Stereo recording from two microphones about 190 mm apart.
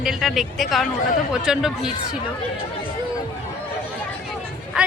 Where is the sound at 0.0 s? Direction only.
Centre (ahead or behind).